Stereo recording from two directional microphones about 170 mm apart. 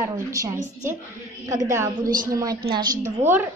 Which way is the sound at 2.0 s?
55° right (ahead or behind).